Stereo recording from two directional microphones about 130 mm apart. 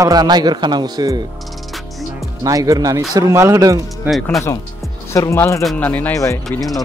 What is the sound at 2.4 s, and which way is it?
Speech, 25° right (ahead or behind).